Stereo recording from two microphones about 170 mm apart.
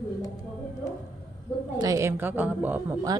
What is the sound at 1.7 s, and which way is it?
A woman's voice, 20° right (ahead or behind).